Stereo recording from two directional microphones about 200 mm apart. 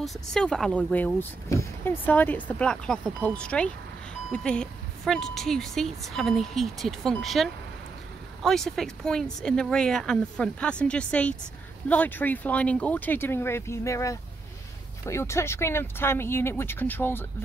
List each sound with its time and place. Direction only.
0.0 s speech: centre (ahead or behind)